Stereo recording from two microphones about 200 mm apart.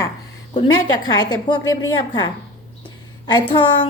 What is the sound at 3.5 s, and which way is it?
Speech, 25° left (ahead or behind).